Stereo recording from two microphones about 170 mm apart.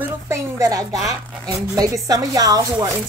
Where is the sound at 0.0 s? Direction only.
15° right (ahead or behind).